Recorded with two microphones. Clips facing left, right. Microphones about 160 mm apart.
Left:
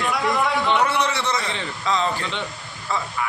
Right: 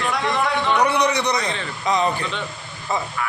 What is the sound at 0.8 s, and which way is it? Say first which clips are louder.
A man's voice: right 3 dB; 15° right (ahead or behind).